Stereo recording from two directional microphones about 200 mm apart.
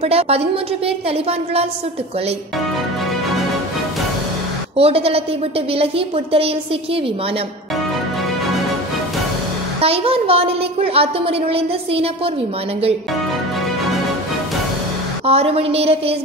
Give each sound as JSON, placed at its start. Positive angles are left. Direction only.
{"t": 0.0, "sound": "a woman's voice", "side_deg": -30}
{"t": 4.7, "sound": "a woman's voice", "side_deg": -30}
{"t": 9.8, "sound": "a woman's voice", "side_deg": -30}
{"t": 15.2, "sound": "a woman's voice", "side_deg": -30}